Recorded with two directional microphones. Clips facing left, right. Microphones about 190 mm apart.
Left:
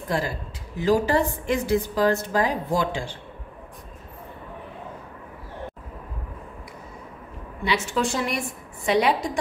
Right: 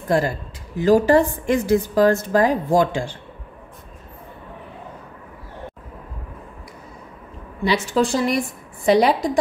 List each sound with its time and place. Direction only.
0.7 s a woman's voice: 50° right (ahead or behind)
7.6 s a woman's voice: 35° right (ahead or behind)